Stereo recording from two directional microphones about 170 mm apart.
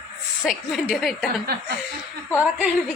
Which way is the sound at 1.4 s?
65° right (ahead or behind).